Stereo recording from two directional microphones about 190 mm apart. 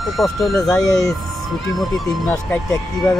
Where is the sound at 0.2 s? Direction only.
Centre (ahead or behind).